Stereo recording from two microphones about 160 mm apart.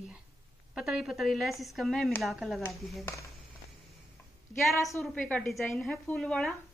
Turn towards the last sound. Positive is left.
turn(degrees=0)  # may be behind; listen again after turning